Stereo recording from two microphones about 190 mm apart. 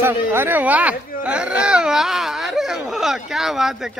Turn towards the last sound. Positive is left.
turn(degrees=0)  # may be behind; listen again after turning